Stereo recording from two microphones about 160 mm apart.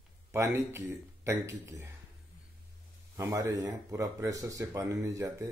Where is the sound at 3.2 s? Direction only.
20° right (ahead or behind).